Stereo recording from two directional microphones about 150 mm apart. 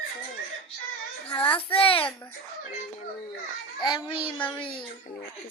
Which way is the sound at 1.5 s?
35° left (ahead or behind).